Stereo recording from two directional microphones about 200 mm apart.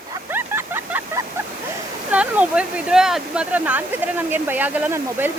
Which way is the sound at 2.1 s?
5° right (ahead or behind).